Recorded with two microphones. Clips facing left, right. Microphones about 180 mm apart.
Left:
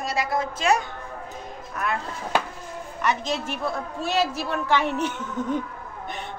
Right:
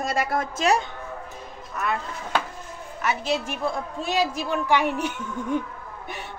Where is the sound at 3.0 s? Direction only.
10° right (ahead or behind).